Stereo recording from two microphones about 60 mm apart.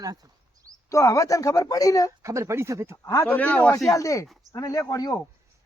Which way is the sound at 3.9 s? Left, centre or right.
Left.